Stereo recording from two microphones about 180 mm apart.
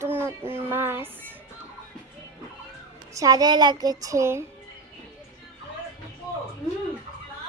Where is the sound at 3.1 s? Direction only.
20° right (ahead or behind).